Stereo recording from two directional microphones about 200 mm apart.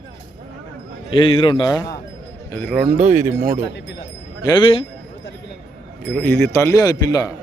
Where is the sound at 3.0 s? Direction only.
40° right (ahead or behind).